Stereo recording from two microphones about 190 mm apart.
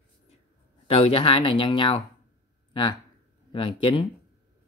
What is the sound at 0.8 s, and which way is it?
Speech, 30° left (ahead or behind).